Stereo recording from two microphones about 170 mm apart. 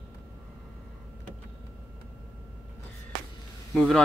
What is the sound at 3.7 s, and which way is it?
Speech, 5° left (ahead or behind).